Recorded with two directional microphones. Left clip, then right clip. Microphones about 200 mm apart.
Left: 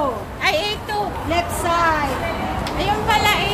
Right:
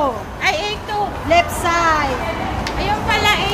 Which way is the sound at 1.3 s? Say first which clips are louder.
Right 6 dB; 25° right (ahead or behind).